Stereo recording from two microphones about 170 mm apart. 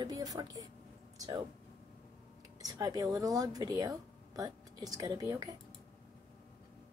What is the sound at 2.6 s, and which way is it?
Speech, 20° right (ahead or behind).